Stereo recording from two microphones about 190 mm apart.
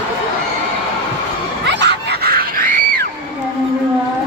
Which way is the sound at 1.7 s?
65° right (ahead or behind).